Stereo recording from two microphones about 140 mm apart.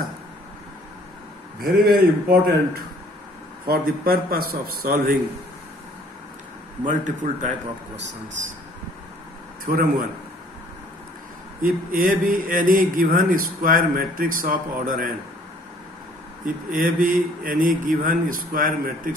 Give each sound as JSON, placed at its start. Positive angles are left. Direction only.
{"t": 1.6, "sound": "a man's voice", "side_deg": -90}
{"t": 3.6, "sound": "a man's voice", "side_deg": -90}
{"t": 6.9, "sound": "a man's voice", "side_deg": -65}
{"t": 9.7, "sound": "speech", "side_deg": -85}
{"t": 11.6, "sound": "speech", "side_deg": -80}
{"t": 16.4, "sound": "speech", "side_deg": -80}